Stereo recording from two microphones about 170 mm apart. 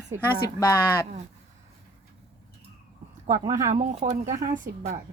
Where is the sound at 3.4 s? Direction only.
20° right (ahead or behind).